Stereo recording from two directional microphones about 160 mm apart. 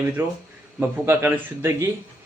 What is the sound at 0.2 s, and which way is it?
Speech, 15° right (ahead or behind).